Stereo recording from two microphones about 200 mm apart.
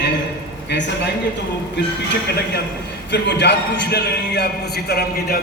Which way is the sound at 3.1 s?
60° left (ahead or behind).